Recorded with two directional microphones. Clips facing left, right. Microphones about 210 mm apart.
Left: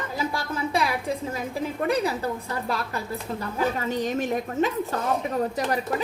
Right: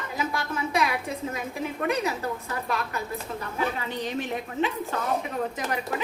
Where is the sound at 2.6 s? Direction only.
35° left (ahead or behind).